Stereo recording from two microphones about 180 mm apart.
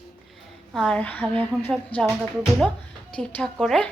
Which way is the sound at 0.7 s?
5° left (ahead or behind).